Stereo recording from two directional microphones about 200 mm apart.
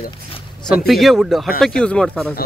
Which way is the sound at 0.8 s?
Centre (ahead or behind).